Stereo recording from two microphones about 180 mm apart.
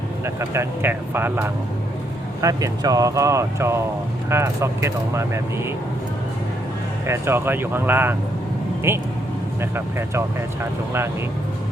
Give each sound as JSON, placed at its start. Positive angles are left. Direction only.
{"t": 0.3, "sound": "speech", "side_deg": -15}
{"t": 7.1, "sound": "speech", "side_deg": -15}